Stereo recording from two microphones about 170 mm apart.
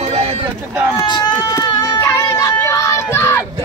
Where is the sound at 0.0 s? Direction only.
40° right (ahead or behind).